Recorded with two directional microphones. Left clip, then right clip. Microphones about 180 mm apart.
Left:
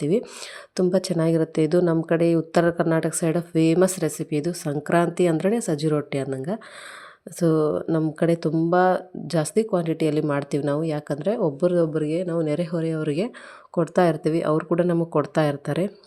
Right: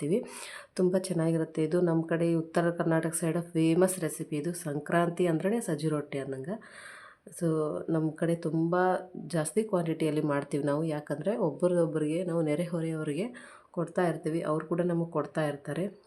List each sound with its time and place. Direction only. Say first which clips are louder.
0.0 s speech: left 7 dB; 30° left (ahead or behind)
7.9 s speech: left 8 dB; 25° left (ahead or behind)
13.7 s speech: left 10 dB; 40° left (ahead or behind)